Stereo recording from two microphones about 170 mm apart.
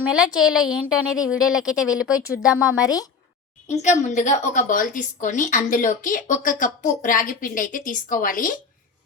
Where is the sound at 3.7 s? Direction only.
45° left (ahead or behind).